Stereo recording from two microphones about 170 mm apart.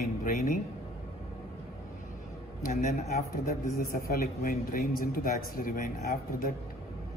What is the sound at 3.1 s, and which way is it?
A man's voice, 60° left (ahead or behind).